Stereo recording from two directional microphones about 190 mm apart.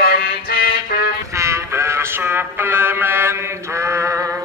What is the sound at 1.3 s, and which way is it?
Music, 15° right (ahead or behind).